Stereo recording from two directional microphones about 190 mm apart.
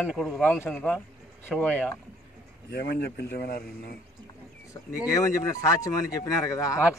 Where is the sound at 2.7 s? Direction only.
60° left (ahead or behind).